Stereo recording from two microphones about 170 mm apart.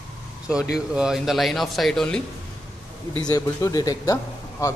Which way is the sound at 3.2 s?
20° left (ahead or behind).